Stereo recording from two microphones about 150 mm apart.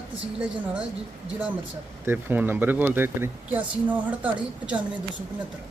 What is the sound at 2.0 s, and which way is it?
Speech, 15° right (ahead or behind).